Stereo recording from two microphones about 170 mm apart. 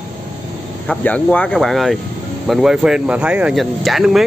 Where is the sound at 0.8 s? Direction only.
10° left (ahead or behind).